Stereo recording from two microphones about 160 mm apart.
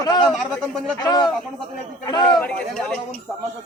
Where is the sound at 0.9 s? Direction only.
25° left (ahead or behind).